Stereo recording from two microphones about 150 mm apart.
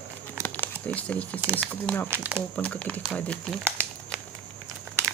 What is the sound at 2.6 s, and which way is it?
Speech, 5° left (ahead or behind).